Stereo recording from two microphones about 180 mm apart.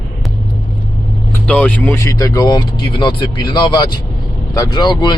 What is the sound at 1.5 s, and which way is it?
Speech, 5° left (ahead or behind).